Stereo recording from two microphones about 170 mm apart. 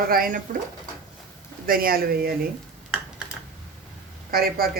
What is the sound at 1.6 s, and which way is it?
Speech, 60° right (ahead or behind).